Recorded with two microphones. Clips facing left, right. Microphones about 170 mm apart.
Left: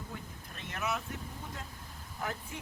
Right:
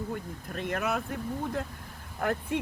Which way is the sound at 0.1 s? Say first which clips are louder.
Right 10 dB; 55° right (ahead or behind).